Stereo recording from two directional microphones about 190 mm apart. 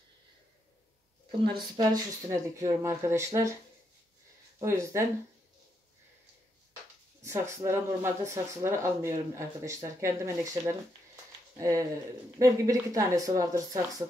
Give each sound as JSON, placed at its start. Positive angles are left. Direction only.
{"t": 1.4, "sound": "speech", "side_deg": -20}
{"t": 4.6, "sound": "speech", "side_deg": -15}
{"t": 7.2, "sound": "speech", "side_deg": -15}